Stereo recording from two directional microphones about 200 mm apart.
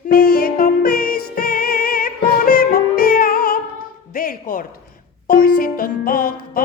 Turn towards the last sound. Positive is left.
turn(degrees=45)  # may be behind; listen again after turning